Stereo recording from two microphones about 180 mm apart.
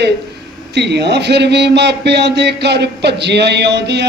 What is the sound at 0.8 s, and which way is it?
A man's voice, 70° right (ahead or behind).